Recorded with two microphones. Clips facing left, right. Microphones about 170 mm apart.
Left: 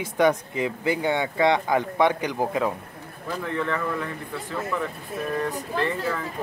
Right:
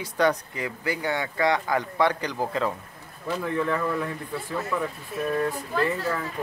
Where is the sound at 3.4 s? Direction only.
10° right (ahead or behind).